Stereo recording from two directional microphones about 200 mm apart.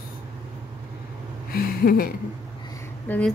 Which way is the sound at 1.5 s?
50° left (ahead or behind).